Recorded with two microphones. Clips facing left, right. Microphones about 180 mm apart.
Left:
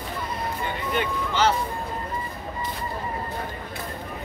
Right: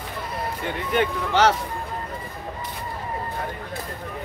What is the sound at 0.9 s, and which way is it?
Speech, 75° right (ahead or behind).